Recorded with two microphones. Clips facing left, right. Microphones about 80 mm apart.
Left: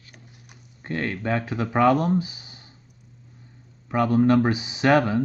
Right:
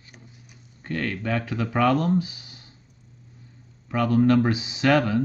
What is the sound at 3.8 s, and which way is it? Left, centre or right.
Speech, left.